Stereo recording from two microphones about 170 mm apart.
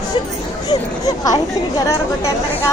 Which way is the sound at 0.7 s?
20° left (ahead or behind).